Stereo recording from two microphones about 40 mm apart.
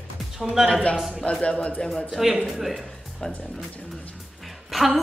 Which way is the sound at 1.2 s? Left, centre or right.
Left.